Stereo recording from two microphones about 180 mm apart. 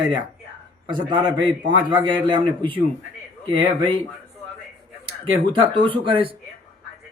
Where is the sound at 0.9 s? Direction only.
25° right (ahead or behind).